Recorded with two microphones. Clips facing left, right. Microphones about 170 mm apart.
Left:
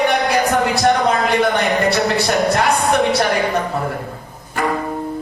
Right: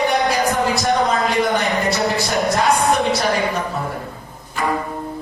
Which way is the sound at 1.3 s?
65° left (ahead or behind).